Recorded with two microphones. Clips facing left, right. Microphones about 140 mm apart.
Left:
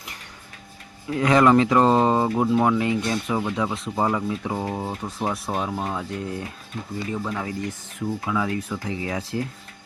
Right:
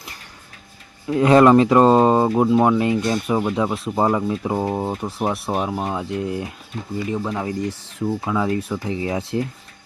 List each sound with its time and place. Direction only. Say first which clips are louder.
1.2 s speech: right 4 dB; 30° right (ahead or behind)
5.2 s speech: right 3 dB; 20° right (ahead or behind)